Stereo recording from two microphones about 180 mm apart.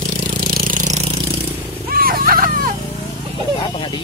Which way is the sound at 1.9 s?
55° right (ahead or behind).